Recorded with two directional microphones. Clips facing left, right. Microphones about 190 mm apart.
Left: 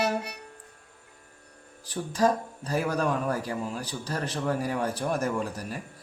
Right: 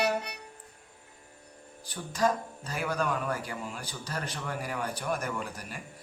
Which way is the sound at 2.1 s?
35° left (ahead or behind).